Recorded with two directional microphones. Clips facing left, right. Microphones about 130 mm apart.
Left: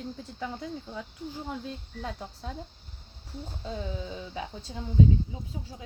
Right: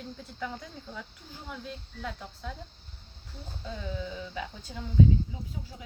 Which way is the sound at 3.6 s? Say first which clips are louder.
Left 1 dB; 25° left (ahead or behind).